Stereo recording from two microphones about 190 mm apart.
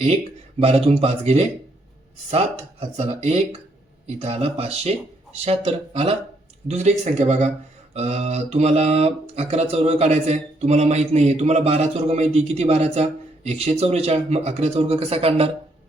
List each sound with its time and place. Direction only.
0.6 s speech: 30° right (ahead or behind)
2.8 s speech: 35° right (ahead or behind)